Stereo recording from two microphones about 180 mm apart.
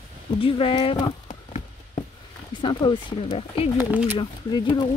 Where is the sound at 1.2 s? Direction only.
40° left (ahead or behind).